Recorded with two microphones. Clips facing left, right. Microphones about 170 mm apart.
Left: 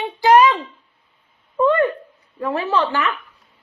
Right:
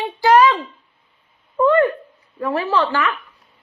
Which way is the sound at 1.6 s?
20° left (ahead or behind).